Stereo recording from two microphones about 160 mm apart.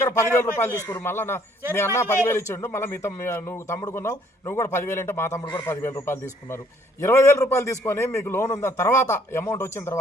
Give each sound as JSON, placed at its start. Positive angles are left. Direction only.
{"t": 0.0, "sound": "a man's voice", "side_deg": 15}